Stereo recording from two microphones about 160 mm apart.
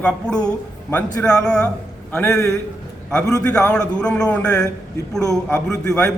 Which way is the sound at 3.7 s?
5° left (ahead or behind).